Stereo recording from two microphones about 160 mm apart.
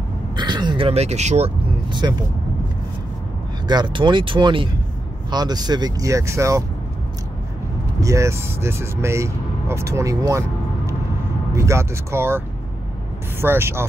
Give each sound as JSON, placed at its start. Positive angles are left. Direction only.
{"t": 0.4, "sound": "speech", "side_deg": -25}
{"t": 1.9, "sound": "speech", "side_deg": -30}
{"t": 3.6, "sound": "speech", "side_deg": -25}
{"t": 8.0, "sound": "speech", "side_deg": -20}
{"t": 11.5, "sound": "speech", "side_deg": -20}